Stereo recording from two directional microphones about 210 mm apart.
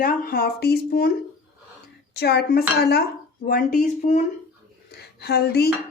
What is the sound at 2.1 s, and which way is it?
Speech, 50° left (ahead or behind).